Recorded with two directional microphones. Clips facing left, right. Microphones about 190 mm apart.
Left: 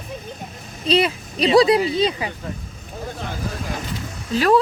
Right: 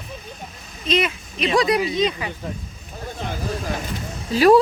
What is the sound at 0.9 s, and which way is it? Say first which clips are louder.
Speech: left 3 dB; 35° left (ahead or behind).